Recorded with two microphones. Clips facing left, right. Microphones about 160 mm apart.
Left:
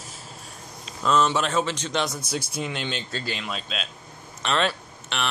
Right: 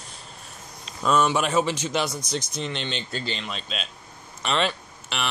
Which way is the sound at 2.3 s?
10° left (ahead or behind).